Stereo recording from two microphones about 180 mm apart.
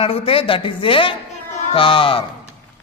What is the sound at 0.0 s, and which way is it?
A man's voice, 30° left (ahead or behind).